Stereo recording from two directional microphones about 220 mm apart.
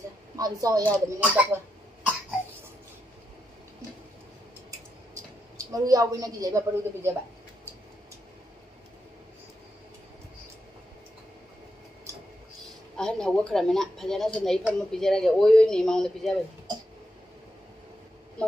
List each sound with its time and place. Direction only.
0.4 s a woman's voice: 15° right (ahead or behind)
5.6 s a woman's voice: 15° right (ahead or behind)
12.9 s speech: 5° left (ahead or behind)